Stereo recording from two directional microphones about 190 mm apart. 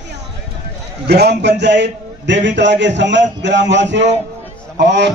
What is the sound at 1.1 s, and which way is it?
A man's voice, 60° right (ahead or behind).